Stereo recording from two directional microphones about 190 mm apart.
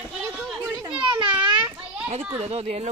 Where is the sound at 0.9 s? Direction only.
5° right (ahead or behind).